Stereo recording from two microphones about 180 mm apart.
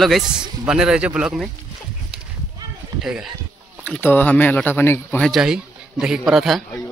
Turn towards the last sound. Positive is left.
turn(degrees=0)  # may be behind; listen again after turning